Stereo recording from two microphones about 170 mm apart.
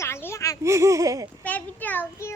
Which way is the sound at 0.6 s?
15° right (ahead or behind).